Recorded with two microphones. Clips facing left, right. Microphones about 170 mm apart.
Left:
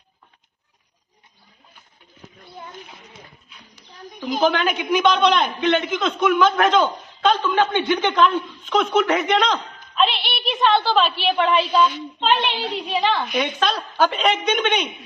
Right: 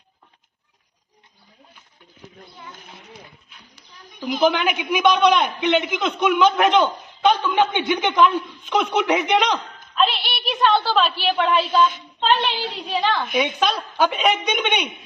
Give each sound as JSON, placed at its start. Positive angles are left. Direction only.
{"t": 4.4, "sound": "a man's voice", "side_deg": -15}
{"t": 9.9, "sound": "a woman's voice", "side_deg": 0}
{"t": 12.7, "sound": "a woman's voice", "side_deg": 0}
{"t": 14.6, "sound": "a man's voice", "side_deg": -10}